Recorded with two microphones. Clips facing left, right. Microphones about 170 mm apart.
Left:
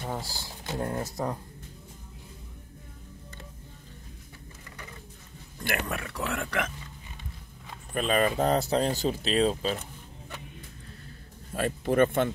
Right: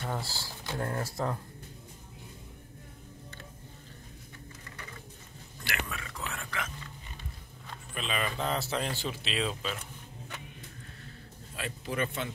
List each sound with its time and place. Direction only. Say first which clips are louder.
0.0 s speech: left 1 dB; 10° left (ahead or behind)
5.6 s speech: left 6 dB; 55° left (ahead or behind)
7.9 s speech: left 9 dB; 45° left (ahead or behind)
11.5 s speech: left 10 dB; 50° left (ahead or behind)